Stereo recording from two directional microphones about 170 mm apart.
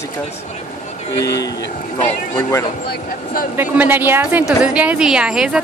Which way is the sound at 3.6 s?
10° right (ahead or behind).